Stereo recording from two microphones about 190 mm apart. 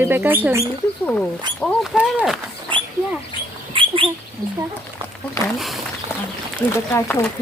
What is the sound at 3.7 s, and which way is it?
Rodents, 25° right (ahead or behind).